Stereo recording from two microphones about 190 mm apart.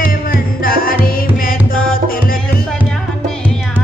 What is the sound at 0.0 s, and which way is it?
Music, 50° left (ahead or behind).